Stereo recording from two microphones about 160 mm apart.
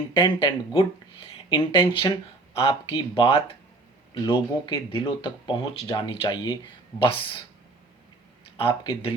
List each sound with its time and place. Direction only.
0.1 s speech: 30° left (ahead or behind)
8.5 s speech: 30° left (ahead or behind)